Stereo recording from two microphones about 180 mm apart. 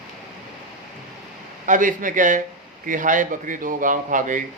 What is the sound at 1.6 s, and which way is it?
Speech, 45° right (ahead or behind).